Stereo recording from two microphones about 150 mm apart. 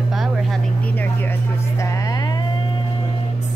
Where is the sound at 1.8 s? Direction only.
20° left (ahead or behind).